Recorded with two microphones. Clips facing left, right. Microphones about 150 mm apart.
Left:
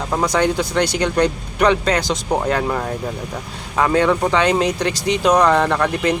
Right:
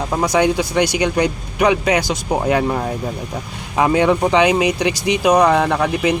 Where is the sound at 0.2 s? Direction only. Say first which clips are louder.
Right 2 dB; 15° right (ahead or behind).